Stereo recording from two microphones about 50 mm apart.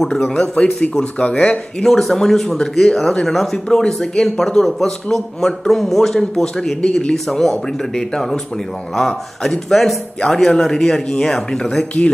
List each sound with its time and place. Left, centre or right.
0.0 s a man's voice: centre
0.3 s speech: centre
1.8 s a man's voice: centre
6.8 s speech: centre
7.2 s a man's voice: centre